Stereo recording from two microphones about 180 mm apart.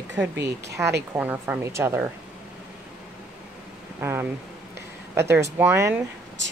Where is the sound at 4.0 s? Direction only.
15° right (ahead or behind).